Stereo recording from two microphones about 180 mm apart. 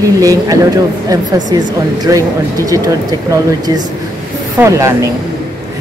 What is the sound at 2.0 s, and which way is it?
Speech, 20° right (ahead or behind).